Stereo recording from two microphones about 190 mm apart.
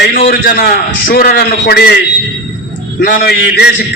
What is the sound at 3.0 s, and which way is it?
Speech, 50° left (ahead or behind).